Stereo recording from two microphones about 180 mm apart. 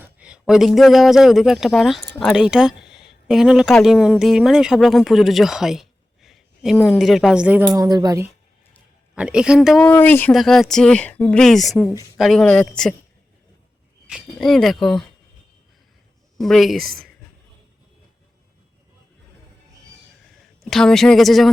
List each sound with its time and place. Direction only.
0.0 s speech: 5° right (ahead or behind)
7.7 s a woman's voice: 20° right (ahead or behind)
9.1 s speech: 5° right (ahead or behind)
9.8 s speech: 10° left (ahead or behind)
14.1 s speech: centre (ahead or behind)
16.4 s speech: centre (ahead or behind)
20.4 s speech: centre (ahead or behind)